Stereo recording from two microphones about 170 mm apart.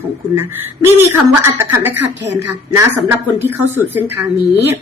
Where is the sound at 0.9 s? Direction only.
15° right (ahead or behind).